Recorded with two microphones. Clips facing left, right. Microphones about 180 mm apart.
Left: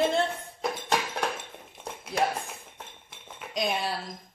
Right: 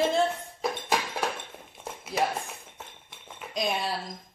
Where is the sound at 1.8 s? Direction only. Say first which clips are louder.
Left 1 dB; centre (ahead or behind).